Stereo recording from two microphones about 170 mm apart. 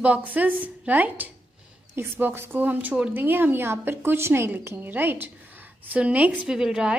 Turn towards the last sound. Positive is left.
turn(degrees=-5)  # may be behind; listen again after turning